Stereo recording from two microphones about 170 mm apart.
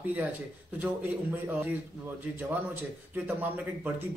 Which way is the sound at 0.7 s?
10° right (ahead or behind).